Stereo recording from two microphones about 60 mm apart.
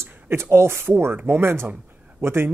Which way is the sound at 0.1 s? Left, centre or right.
Right.